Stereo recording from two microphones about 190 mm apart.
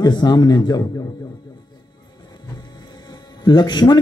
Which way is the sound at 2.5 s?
20° left (ahead or behind).